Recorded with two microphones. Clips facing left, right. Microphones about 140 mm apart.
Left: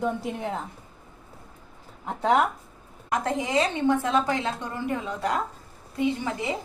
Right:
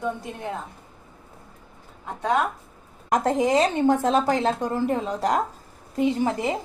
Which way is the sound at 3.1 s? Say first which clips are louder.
Right 5 dB; 45° right (ahead or behind).